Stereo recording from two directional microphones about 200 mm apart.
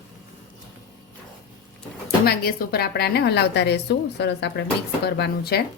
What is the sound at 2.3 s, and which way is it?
A woman's voice, 50° left (ahead or behind).